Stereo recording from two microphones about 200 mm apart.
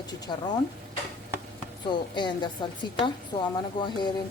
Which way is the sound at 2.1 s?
20° left (ahead or behind).